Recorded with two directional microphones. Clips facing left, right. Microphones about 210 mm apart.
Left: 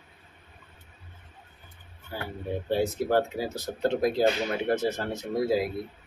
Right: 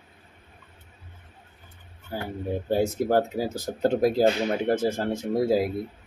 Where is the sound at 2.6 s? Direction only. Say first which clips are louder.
Right 2 dB; 45° right (ahead or behind).